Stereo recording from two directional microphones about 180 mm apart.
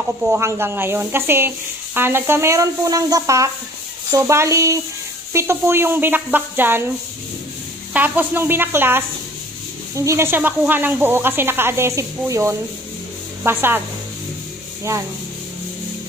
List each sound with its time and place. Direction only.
0.3 s speech: 15° right (ahead or behind)
7.9 s speech: 10° right (ahead or behind)